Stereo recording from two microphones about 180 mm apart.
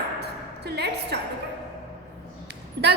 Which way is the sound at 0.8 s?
65° right (ahead or behind).